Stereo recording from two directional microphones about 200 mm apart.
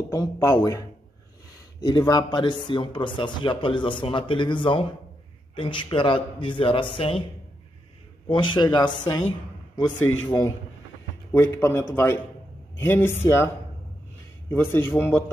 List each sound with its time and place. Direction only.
0.1 s speech: 15° left (ahead or behind)
8.3 s speech: 25° left (ahead or behind)
10.2 s speech: 20° left (ahead or behind)
14.5 s speech: 10° left (ahead or behind)